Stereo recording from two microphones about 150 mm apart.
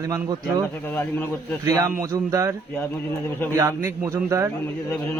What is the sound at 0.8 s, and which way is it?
Speech, 10° left (ahead or behind).